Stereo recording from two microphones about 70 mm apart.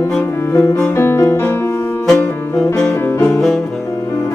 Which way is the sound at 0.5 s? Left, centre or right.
Left.